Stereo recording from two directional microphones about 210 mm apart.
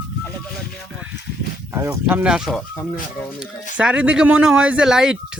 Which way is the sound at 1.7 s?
15° right (ahead or behind).